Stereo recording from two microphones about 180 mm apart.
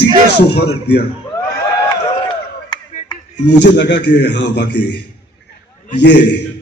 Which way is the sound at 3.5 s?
75° left (ahead or behind).